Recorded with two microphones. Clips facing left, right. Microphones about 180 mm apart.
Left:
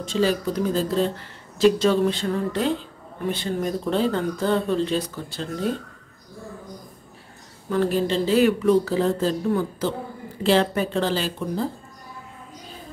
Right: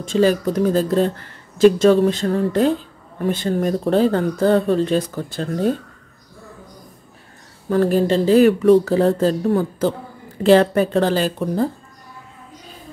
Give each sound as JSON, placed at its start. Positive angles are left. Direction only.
{"t": 0.0, "sound": "speech", "side_deg": -50}
{"t": 7.7, "sound": "speech", "side_deg": -45}